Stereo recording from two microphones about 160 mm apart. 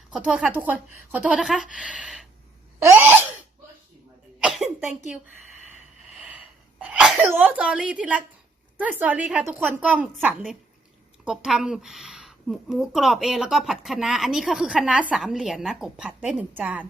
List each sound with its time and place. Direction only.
0.1 s a woman's voice: 5° right (ahead or behind)
2.8 s sneeze: 15° right (ahead or behind)
4.4 s cough: centre (ahead or behind)
6.2 s sneeze: 5° right (ahead or behind)
7.3 s a woman's voice: 10° right (ahead or behind)